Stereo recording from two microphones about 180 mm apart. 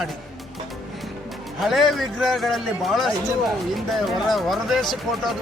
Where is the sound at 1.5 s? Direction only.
Centre (ahead or behind).